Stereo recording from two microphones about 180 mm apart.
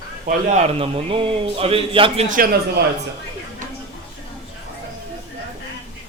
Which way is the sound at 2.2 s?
50° right (ahead or behind).